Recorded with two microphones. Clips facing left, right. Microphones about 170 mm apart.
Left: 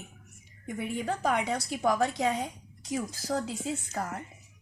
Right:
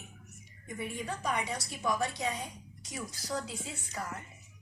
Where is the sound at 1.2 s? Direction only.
90° left.